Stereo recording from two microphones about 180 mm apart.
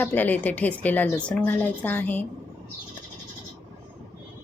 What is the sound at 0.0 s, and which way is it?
A woman's voice, 10° left (ahead or behind).